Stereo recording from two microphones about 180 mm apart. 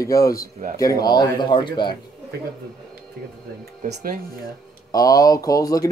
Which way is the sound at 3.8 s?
45° right (ahead or behind).